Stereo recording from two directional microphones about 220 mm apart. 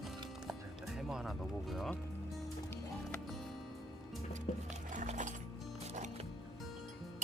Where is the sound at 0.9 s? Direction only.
Centre (ahead or behind).